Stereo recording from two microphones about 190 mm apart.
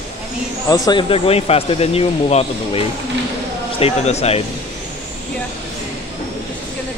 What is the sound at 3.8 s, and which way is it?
Speech, 35° left (ahead or behind).